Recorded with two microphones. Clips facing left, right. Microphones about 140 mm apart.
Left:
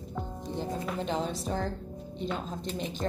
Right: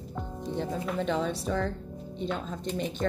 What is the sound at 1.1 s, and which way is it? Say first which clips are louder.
Speech: right 2 dB; 65° right (ahead or behind).